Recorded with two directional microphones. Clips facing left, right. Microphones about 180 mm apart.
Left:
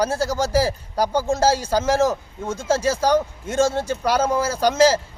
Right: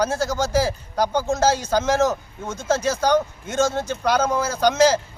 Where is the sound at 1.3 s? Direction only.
30° left (ahead or behind).